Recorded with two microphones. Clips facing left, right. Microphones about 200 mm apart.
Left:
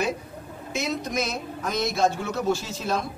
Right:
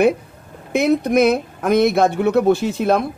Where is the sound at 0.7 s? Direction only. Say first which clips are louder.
Right 13 dB; 60° right (ahead or behind).